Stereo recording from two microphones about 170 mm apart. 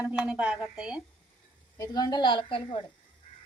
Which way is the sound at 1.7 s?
20° left (ahead or behind).